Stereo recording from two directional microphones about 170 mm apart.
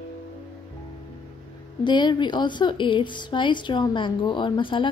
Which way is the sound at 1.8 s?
25° left (ahead or behind).